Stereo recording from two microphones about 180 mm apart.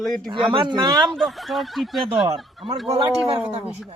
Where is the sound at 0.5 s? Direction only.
25° right (ahead or behind).